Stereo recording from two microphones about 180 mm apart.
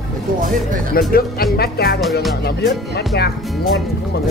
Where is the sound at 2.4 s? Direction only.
65° left (ahead or behind).